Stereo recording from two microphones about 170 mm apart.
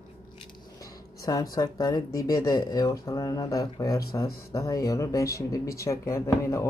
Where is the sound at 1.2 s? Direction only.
20° left (ahead or behind).